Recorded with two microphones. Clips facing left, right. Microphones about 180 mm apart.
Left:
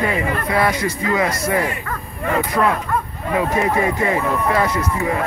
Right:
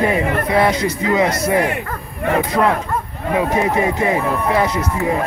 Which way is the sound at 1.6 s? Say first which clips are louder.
Right 3 dB; 70° right (ahead or behind).